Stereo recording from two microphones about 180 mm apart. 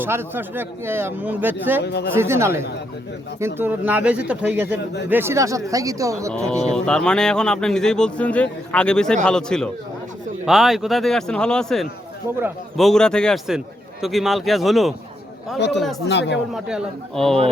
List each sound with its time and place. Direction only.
0.0 s a man's voice: 10° right (ahead or behind)
1.8 s speech: 70° left (ahead or behind)
2.1 s a man's voice: 15° right (ahead or behind)
6.3 s speech: 5° left (ahead or behind)
15.5 s speech: 75° left (ahead or behind)
16.6 s speech: 5° right (ahead or behind)